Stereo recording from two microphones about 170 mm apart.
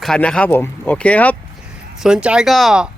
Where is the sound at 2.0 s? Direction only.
5° right (ahead or behind).